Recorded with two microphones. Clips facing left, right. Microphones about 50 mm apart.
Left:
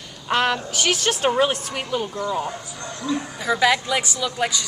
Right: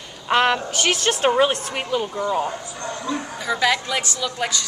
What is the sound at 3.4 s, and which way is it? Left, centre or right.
A woman's voice, centre.